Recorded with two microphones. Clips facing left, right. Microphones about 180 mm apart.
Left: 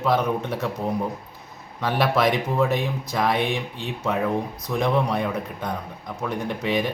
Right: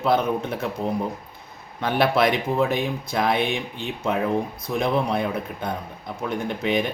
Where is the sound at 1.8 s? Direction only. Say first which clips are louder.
Right 1 dB; centre (ahead or behind).